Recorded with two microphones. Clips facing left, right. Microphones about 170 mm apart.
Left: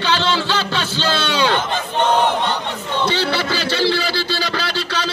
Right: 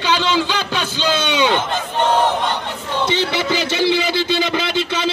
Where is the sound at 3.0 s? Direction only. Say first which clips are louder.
Right 1 dB; 20° right (ahead or behind).